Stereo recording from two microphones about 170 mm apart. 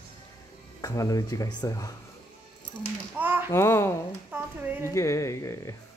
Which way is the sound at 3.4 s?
15° left (ahead or behind).